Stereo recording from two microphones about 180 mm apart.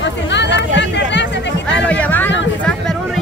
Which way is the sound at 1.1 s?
75° left (ahead or behind).